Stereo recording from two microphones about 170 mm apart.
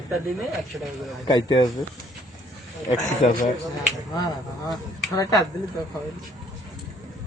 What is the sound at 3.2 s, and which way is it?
Speech, 50° left (ahead or behind).